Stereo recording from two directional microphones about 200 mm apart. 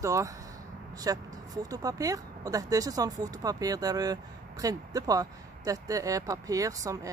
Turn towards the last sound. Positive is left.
turn(degrees=-15)  # may be behind; listen again after turning